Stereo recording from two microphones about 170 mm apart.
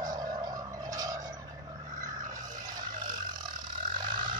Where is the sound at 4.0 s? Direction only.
25° right (ahead or behind).